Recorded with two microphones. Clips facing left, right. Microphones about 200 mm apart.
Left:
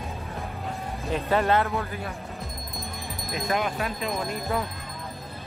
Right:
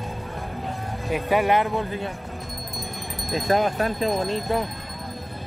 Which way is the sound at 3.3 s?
35° right (ahead or behind).